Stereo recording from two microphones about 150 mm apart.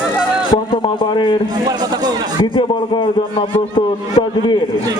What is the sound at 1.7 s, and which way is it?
Speech, 25° right (ahead or behind).